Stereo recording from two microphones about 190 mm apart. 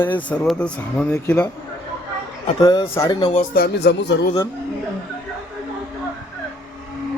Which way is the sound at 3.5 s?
60° left (ahead or behind).